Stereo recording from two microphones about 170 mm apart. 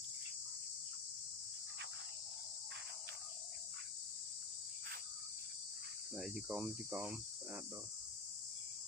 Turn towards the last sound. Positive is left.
turn(degrees=-10)  # may be behind; listen again after turning